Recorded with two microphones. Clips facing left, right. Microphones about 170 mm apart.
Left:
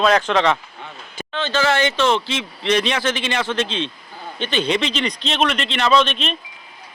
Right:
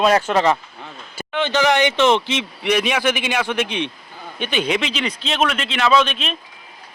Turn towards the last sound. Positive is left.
turn(degrees=-5)  # may be behind; listen again after turning